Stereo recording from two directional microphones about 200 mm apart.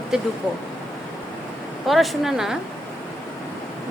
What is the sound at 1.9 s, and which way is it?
Speech, centre (ahead or behind).